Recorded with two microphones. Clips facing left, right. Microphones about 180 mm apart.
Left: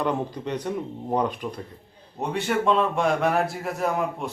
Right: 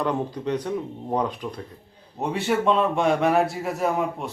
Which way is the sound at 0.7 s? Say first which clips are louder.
Even; 5° left (ahead or behind).